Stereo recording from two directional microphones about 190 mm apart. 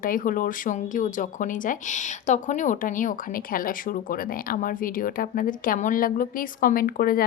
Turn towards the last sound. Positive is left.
turn(degrees=50)  # may be behind; listen again after turning